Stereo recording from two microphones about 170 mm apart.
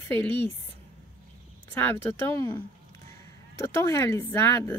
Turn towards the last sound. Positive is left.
turn(degrees=15)  # may be behind; listen again after turning